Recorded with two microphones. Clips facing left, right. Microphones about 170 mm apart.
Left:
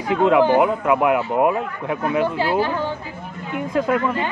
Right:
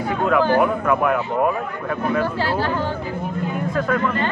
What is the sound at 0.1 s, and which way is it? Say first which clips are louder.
Speech: left 3 dB; 20° left (ahead or behind).